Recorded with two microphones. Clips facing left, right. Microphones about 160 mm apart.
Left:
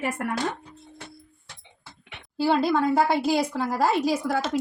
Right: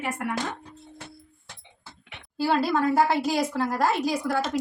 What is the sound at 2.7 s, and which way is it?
A woman's voice, 5° right (ahead or behind).